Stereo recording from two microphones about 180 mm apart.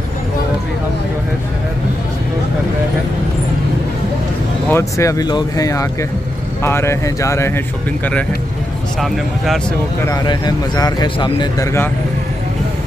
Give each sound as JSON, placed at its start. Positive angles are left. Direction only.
{"t": 4.6, "sound": "speech", "side_deg": 15}
{"t": 10.0, "sound": "speech", "side_deg": 20}